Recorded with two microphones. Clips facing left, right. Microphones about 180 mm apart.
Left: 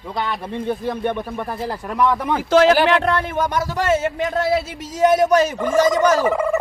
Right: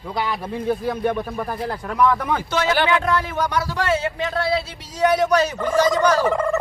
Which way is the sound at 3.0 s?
55° left (ahead or behind).